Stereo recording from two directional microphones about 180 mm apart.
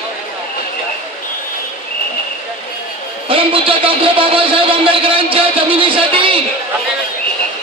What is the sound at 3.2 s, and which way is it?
A man's voice, 30° right (ahead or behind).